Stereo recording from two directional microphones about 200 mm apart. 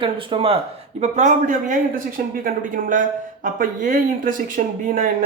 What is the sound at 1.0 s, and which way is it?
Speech, 35° right (ahead or behind).